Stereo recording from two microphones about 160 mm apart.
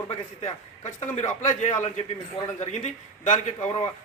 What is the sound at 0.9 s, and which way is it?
A man's voice, 45° left (ahead or behind).